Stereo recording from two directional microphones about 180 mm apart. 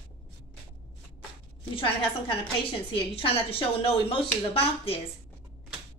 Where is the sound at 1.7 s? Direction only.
30° left (ahead or behind).